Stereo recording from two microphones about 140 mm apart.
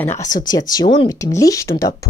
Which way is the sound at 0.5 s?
30° left (ahead or behind).